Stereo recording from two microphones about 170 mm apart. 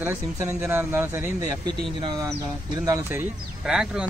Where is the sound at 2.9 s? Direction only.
15° right (ahead or behind).